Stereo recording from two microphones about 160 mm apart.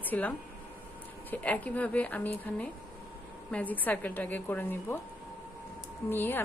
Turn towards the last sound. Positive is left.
turn(degrees=10)  # may be behind; listen again after turning